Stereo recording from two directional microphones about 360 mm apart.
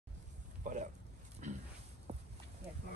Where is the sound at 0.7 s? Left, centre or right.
Right.